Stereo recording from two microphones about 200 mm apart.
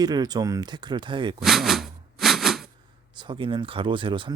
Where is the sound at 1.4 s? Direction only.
Centre (ahead or behind).